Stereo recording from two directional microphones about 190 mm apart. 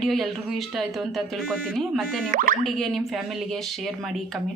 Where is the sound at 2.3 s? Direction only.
45° right (ahead or behind).